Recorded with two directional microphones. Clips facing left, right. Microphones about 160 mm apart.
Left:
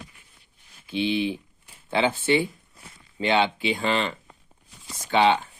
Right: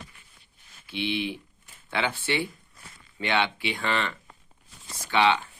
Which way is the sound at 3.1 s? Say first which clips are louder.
Left 4 dB; 25° left (ahead or behind).